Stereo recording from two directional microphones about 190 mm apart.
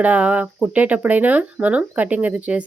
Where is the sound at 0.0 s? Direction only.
5° right (ahead or behind).